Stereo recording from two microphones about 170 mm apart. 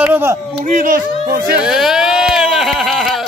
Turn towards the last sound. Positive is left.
turn(degrees=0)  # may be behind; listen again after turning